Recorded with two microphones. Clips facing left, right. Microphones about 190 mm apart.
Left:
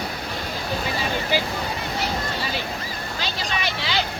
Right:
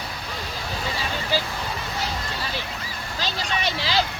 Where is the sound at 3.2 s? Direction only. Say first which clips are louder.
Right 1 dB; 35° right (ahead or behind).